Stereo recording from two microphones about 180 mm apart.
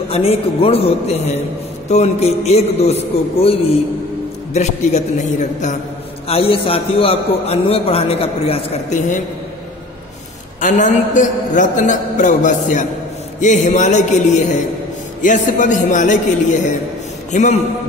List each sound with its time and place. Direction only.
0.1 s a man's voice: 35° left (ahead or behind)
10.6 s a man's voice: 45° left (ahead or behind)